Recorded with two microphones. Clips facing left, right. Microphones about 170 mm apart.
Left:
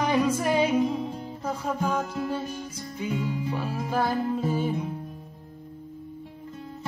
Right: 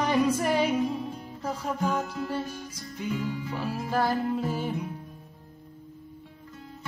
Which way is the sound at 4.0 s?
Centre (ahead or behind).